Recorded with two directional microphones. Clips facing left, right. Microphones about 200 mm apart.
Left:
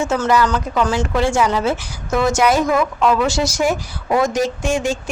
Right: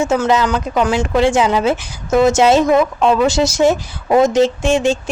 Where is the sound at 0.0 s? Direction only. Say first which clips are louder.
Right 2 dB; 15° right (ahead or behind).